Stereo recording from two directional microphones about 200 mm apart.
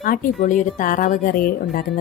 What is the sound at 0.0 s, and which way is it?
A woman's voice, 45° left (ahead or behind).